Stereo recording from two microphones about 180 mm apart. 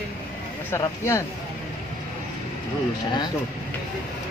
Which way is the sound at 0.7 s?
15° left (ahead or behind).